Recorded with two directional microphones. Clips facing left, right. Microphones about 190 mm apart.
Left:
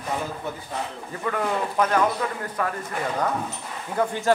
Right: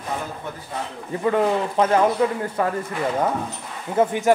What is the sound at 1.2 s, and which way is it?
Speech, 25° right (ahead or behind).